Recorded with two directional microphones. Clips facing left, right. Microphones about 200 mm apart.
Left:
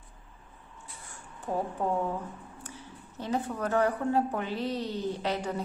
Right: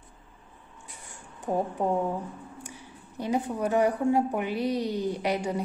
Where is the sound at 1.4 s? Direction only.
15° right (ahead or behind).